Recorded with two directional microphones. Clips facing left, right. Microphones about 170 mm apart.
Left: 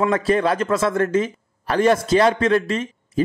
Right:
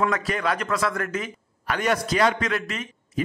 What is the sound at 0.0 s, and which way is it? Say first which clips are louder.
A man's voice: left 6 dB; 30° left (ahead or behind).